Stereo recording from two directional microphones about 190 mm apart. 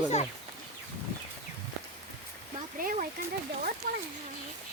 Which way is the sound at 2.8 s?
50° right (ahead or behind).